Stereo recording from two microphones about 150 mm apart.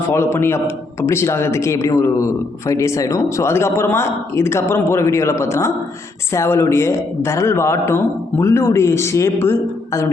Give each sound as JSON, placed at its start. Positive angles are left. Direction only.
{"t": 0.1, "sound": "a man's voice", "side_deg": 15}